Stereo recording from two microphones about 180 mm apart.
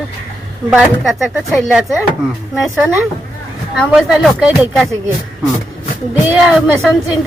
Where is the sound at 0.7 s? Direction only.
5° right (ahead or behind).